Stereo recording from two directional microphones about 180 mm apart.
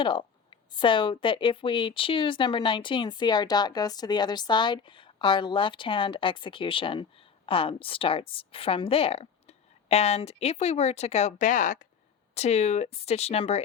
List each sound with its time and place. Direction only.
0.0 s speech: 25° left (ahead or behind)